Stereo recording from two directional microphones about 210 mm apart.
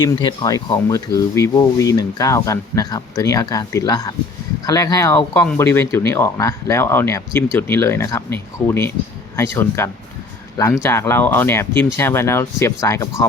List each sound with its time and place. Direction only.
0.0 s speech: 20° left (ahead or behind)